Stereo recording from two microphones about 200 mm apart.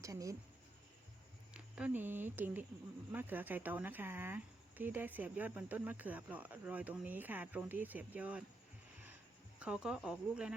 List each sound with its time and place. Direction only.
0.0 s speech: 15° right (ahead or behind)
1.5 s speech: 5° right (ahead or behind)
9.6 s speech: 5° right (ahead or behind)